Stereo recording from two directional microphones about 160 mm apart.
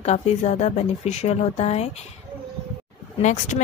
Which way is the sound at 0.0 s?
45° left (ahead or behind).